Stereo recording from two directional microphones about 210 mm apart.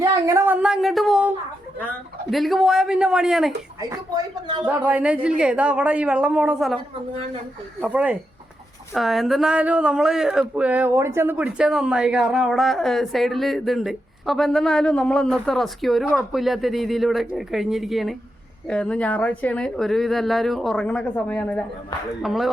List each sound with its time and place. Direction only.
0.0 s speech: 15° right (ahead or behind)
2.3 s speech: centre (ahead or behind)
3.8 s speech: 15° right (ahead or behind)
4.9 s speech: 5° right (ahead or behind)
7.8 s speech: 5° right (ahead or behind)